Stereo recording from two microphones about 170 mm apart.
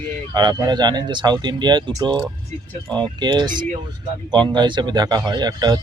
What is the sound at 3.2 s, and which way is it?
Speech, 25° right (ahead or behind).